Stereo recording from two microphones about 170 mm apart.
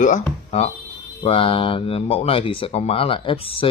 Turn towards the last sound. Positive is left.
turn(degrees=30)  # may be behind; listen again after turning